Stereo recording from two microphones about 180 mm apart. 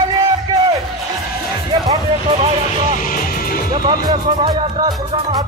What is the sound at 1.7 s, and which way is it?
Music, 30° right (ahead or behind).